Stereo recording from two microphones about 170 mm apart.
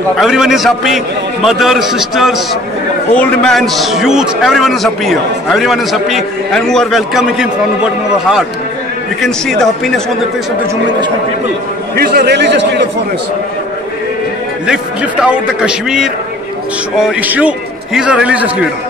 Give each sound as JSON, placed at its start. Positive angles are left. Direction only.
{"t": 0.2, "sound": "a man's voice", "side_deg": 0}
{"t": 12.0, "sound": "a man's voice", "side_deg": -65}
{"t": 15.2, "sound": "a man's voice", "side_deg": -5}